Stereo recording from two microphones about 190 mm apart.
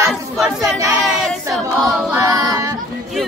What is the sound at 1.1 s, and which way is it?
Choir, 5° left (ahead or behind).